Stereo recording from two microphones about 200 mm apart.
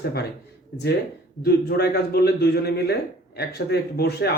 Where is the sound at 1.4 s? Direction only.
55° left (ahead or behind).